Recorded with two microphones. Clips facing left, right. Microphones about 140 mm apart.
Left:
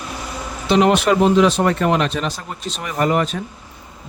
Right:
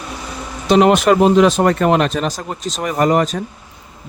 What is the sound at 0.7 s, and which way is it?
Speech, 45° right (ahead or behind).